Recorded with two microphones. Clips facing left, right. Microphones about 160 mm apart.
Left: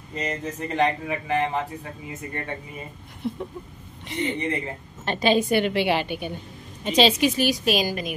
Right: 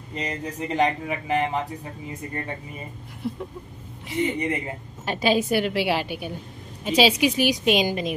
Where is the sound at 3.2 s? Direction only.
5° right (ahead or behind).